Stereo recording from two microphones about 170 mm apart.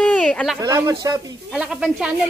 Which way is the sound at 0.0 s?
5° left (ahead or behind).